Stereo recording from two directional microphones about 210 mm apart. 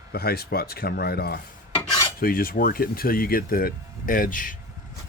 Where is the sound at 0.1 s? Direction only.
45° left (ahead or behind).